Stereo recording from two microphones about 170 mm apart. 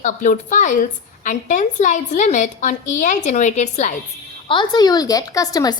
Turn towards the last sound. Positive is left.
turn(degrees=20)  # may be behind; listen again after turning